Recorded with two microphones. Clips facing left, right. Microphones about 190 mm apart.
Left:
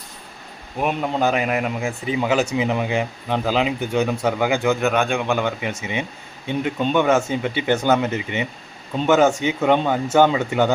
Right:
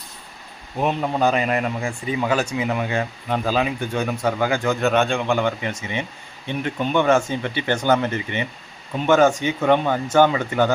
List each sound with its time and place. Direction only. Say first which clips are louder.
0.8 s speech: even; 15° left (ahead or behind)
2.6 s speech: left 2 dB; 20° left (ahead or behind); by 5.0 s centre (ahead or behind)
5.0 s speech: even; 15° left (ahead or behind)